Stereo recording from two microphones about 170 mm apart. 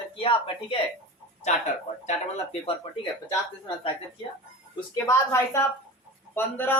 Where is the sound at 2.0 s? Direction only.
35° left (ahead or behind).